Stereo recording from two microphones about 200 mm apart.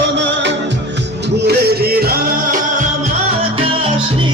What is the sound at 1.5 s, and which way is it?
Music, 50° right (ahead or behind).